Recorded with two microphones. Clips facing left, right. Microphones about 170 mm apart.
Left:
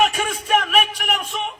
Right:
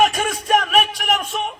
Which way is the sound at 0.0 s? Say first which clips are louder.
Right 2 dB; 40° right (ahead or behind).